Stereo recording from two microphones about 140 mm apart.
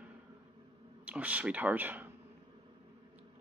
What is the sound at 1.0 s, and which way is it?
Speech, 10° right (ahead or behind).